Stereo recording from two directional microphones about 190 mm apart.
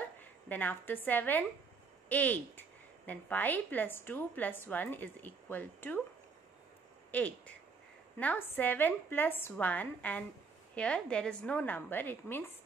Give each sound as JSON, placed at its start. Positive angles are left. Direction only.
{"t": 0.2, "sound": "a woman's voice", "side_deg": 10}
{"t": 7.1, "sound": "a woman's voice", "side_deg": 10}